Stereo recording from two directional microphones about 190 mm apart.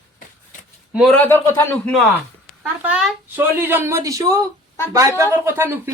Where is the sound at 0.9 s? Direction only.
5° right (ahead or behind).